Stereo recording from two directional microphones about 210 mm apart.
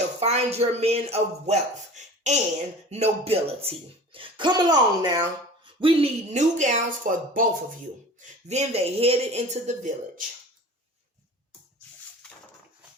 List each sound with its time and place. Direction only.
0.2 s speech: 30° right (ahead or behind)